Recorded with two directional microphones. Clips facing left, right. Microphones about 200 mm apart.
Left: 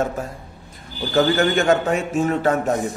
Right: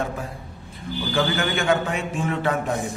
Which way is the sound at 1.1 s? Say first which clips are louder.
Left 7 dB; 40° left (ahead or behind).